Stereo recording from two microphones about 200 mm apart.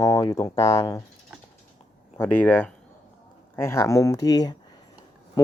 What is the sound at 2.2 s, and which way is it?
Speech, 10° left (ahead or behind).